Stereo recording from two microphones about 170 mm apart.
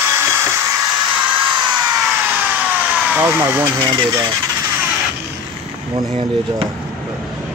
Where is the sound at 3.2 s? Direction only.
10° right (ahead or behind).